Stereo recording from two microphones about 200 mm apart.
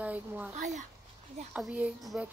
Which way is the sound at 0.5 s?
35° right (ahead or behind).